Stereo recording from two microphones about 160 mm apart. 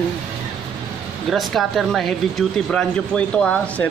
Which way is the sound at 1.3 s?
Centre (ahead or behind).